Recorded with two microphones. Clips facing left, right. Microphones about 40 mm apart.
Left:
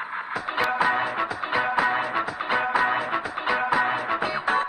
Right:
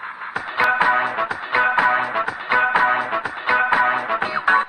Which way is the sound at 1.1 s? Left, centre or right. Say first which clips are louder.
Right 4 dB; right.